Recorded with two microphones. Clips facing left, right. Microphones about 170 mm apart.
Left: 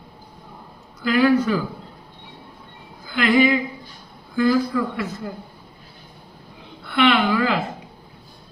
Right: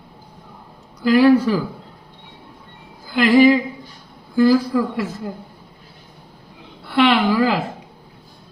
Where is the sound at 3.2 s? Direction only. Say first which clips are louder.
Right 5 dB; 35° right (ahead or behind).